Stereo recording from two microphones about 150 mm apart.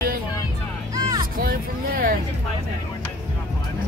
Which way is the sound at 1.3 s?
75° right (ahead or behind).